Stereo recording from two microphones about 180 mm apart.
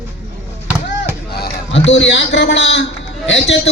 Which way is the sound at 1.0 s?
60° left (ahead or behind).